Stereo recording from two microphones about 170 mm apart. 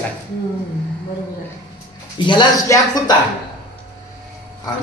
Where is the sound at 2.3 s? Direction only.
25° left (ahead or behind).